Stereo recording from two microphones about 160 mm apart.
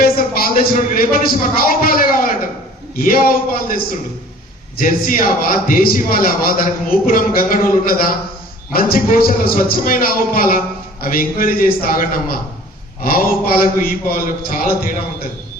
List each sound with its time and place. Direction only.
0.0 s a man's voice: 65° left (ahead or behind)
4.8 s a man's voice: 60° left (ahead or behind)